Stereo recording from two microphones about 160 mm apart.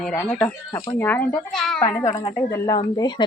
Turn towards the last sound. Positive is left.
turn(degrees=25)  # may be behind; listen again after turning